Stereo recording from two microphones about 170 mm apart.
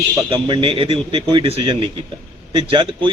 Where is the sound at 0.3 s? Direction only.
30° right (ahead or behind).